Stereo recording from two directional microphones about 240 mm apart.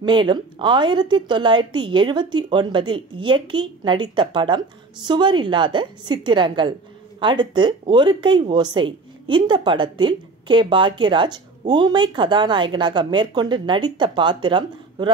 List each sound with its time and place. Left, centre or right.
0.0 s speech: centre